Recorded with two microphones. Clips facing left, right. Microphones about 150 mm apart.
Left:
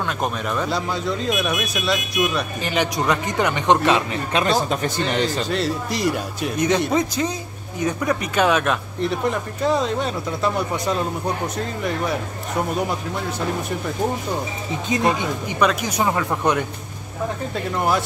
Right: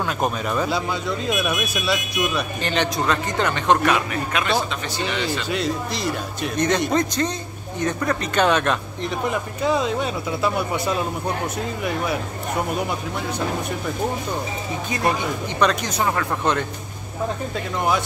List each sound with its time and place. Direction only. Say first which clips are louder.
0.0 s speech: right 1 dB; 5° right (ahead or behind); by 5.5 s 45° left (ahead or behind)
5.9 s speech: left 3 dB; 10° left (ahead or behind)
14.9 s speech: left 3 dB; 20° left (ahead or behind)
15.6 s speech: left 1 dB; 5° left (ahead or behind)
17.7 s speech: left 1 dB; 5° left (ahead or behind)